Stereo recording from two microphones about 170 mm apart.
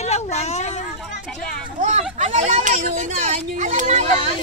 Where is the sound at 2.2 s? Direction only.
45° right (ahead or behind).